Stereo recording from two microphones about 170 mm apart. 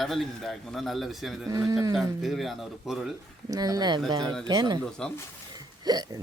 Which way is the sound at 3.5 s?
20° right (ahead or behind).